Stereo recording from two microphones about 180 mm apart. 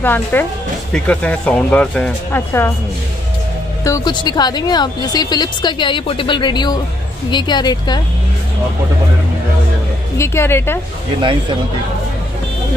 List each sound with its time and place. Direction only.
0.0 s speech: 10° left (ahead or behind)
3.8 s speech: 20° left (ahead or behind)
10.1 s speech: 15° left (ahead or behind)
11.1 s speech: 30° right (ahead or behind)